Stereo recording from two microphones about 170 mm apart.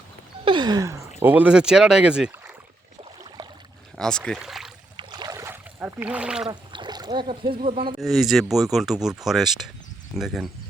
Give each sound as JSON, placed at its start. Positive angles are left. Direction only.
{"t": 0.4, "sound": "a sound", "side_deg": -25}
{"t": 1.2, "sound": "speech", "side_deg": -10}
{"t": 3.9, "sound": "speech", "side_deg": 5}
{"t": 4.9, "sound": "boat", "side_deg": -25}
{"t": 6.5, "sound": "speech", "side_deg": -25}
{"t": 8.0, "sound": "speech", "side_deg": 0}